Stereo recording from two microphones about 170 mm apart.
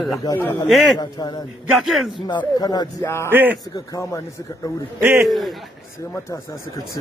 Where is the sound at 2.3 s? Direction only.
25° left (ahead or behind).